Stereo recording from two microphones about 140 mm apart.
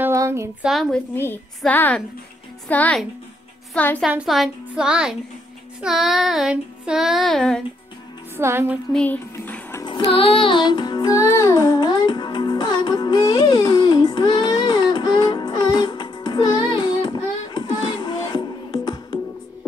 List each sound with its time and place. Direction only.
0.0 s a sound: 20° right (ahead or behind)
0.7 s child singing: centre (ahead or behind)
1.1 s a woman's voice: 15° left (ahead or behind)
4.0 s child singing: 5° right (ahead or behind)
8.4 s music: 15° right (ahead or behind)
8.9 s music: 10° left (ahead or behind)
10.0 s music: 40° left (ahead or behind)